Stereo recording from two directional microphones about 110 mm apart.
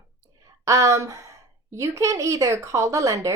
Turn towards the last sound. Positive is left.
turn(degrees=-30)  # may be behind; listen again after turning